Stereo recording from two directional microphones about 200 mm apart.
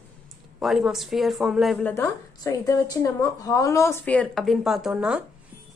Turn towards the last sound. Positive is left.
turn(degrees=-5)  # may be behind; listen again after turning